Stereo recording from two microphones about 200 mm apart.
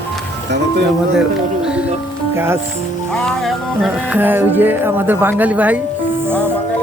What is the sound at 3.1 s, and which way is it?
Music, centre (ahead or behind).